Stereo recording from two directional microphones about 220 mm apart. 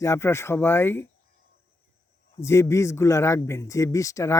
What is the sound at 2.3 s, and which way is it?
Speech, 10° left (ahead or behind).